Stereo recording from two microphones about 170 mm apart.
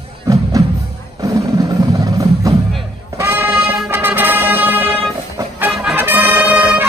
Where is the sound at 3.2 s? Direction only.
10° right (ahead or behind).